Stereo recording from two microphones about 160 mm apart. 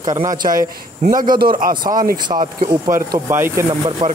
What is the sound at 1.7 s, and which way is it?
Speech, 25° right (ahead or behind).